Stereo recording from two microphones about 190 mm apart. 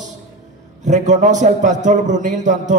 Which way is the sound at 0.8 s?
40° right (ahead or behind).